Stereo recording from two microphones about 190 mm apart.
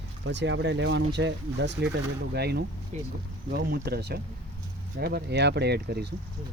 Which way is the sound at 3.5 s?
55° right (ahead or behind).